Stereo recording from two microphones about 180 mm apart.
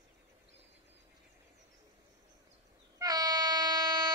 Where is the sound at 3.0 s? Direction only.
20° right (ahead or behind).